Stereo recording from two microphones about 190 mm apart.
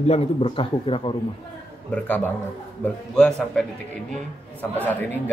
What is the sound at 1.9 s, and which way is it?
A man's voice, 10° left (ahead or behind).